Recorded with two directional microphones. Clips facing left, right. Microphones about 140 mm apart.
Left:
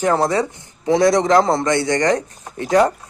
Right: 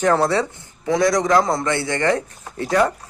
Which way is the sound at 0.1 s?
15° left (ahead or behind).